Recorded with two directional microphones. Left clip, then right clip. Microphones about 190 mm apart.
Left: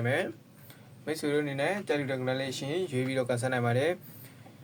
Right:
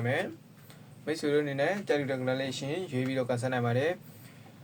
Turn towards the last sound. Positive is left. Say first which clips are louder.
# left 1 dB
turn(degrees=25)  # may be behind; listen again after turning